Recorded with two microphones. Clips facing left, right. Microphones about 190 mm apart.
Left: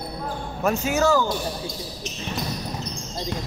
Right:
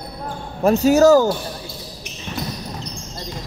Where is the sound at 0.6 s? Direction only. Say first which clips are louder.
Right 9 dB; 35° right (ahead or behind).